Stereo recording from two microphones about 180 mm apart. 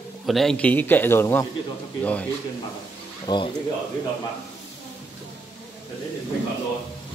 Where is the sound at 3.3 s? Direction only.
25° left (ahead or behind).